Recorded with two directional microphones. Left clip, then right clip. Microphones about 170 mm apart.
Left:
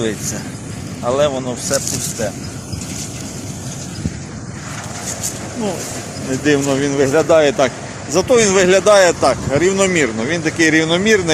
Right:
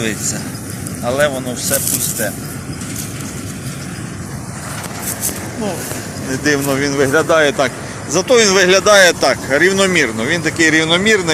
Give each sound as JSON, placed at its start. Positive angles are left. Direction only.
{"t": 1.0, "sound": "speech", "side_deg": 15}
{"t": 6.4, "sound": "speech", "side_deg": 35}
{"t": 7.0, "sound": "speech", "side_deg": 20}
{"t": 8.1, "sound": "speech", "side_deg": 15}
{"t": 9.3, "sound": "speech", "side_deg": 0}
{"t": 10.2, "sound": "speech", "side_deg": 25}